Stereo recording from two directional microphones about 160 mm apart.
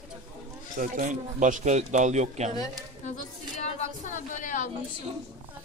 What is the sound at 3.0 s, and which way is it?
A woman's voice, 45° left (ahead or behind).